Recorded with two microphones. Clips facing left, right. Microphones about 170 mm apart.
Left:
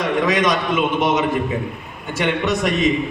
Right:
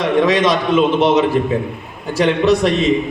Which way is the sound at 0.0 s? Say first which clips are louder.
Right 4 dB; 25° right (ahead or behind).